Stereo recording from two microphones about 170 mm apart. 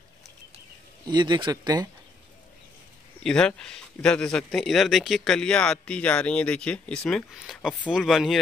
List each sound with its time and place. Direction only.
1.0 s speech: 25° right (ahead or behind)
3.3 s speech: 5° left (ahead or behind)